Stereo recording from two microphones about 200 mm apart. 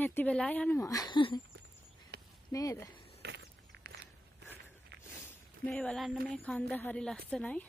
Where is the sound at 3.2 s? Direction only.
55° right (ahead or behind).